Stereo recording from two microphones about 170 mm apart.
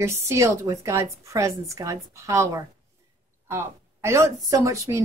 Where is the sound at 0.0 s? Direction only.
15° right (ahead or behind).